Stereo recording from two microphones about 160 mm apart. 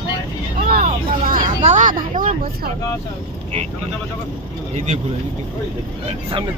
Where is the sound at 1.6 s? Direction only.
50° right (ahead or behind).